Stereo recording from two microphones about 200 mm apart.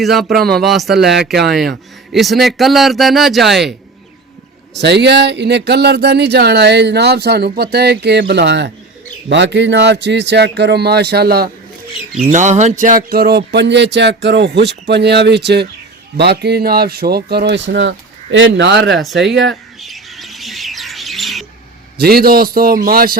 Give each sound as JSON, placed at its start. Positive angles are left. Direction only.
{"t": 0.0, "sound": "speech", "side_deg": 0}
{"t": 1.2, "sound": "speech", "side_deg": -55}
{"t": 2.1, "sound": "speech", "side_deg": 0}
{"t": 4.8, "sound": "speech", "side_deg": -60}
{"t": 12.3, "sound": "speech", "side_deg": -35}
{"t": 18.9, "sound": "speech", "side_deg": 0}
{"t": 19.8, "sound": "bird", "side_deg": 0}
{"t": 21.9, "sound": "a man's voice", "side_deg": -50}